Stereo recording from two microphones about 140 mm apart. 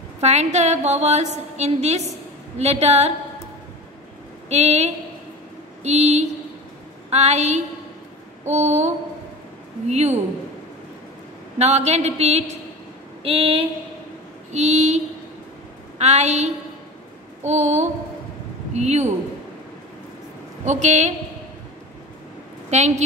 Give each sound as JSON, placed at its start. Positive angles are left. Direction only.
{"t": 0.2, "sound": "a woman's voice", "side_deg": -55}
{"t": 4.5, "sound": "a woman's voice", "side_deg": -50}
{"t": 11.5, "sound": "a woman's voice", "side_deg": -50}
{"t": 14.5, "sound": "a woman's voice", "side_deg": -55}
{"t": 16.0, "sound": "a woman's voice", "side_deg": -55}
{"t": 20.6, "sound": "a woman's voice", "side_deg": -60}
{"t": 22.7, "sound": "a woman's voice", "side_deg": -55}